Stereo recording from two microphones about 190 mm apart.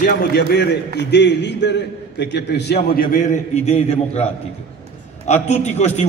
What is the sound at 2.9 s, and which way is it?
A man's voice, 45° left (ahead or behind).